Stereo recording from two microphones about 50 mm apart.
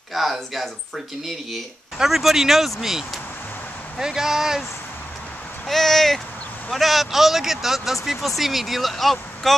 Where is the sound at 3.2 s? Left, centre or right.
Left.